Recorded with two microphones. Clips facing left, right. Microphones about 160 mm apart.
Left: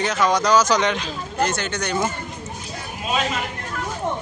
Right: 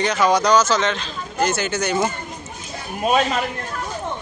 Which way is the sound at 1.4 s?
5° right (ahead or behind).